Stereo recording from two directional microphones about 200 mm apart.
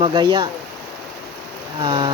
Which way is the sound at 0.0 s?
20° right (ahead or behind).